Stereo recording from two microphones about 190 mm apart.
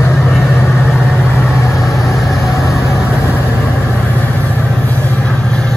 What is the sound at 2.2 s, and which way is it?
Vehicle, centre (ahead or behind).